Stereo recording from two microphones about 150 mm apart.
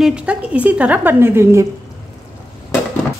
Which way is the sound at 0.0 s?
5° right (ahead or behind).